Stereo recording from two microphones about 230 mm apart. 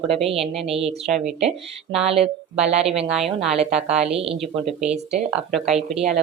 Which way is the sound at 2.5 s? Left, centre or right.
Centre.